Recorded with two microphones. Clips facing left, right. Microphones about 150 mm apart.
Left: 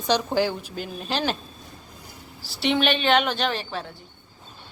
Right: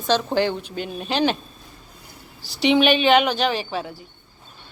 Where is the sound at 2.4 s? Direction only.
Centre (ahead or behind).